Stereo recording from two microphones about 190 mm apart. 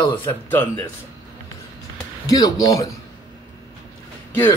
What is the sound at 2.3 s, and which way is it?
Speech, 20° left (ahead or behind).